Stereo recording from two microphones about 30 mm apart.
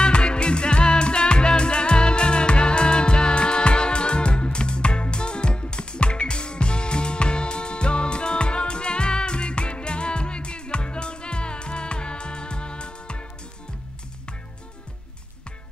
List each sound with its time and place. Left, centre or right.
0.0 s music: left